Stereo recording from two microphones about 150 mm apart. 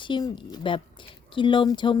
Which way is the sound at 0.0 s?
30° left (ahead or behind).